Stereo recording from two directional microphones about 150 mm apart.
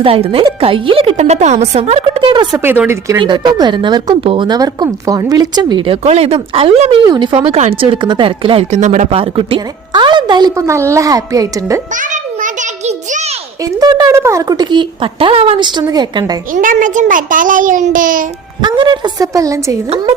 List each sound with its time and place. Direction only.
0.0 s speech: 40° right (ahead or behind)
2.6 s speech: 15° right (ahead or behind)
3.2 s speech: 30° right (ahead or behind)
7.0 s speech: 30° right (ahead or behind)
8.7 s speech: 50° right (ahead or behind)
9.0 s a woman's voice: 40° right (ahead or behind); by 11.8 s 25° right (ahead or behind)
11.9 s a sound: 60° right (ahead or behind)
13.7 s a woman's voice: 25° right (ahead or behind)
16.5 s a child's voice: 60° right (ahead or behind)
18.6 s a woman's voice: 30° right (ahead or behind)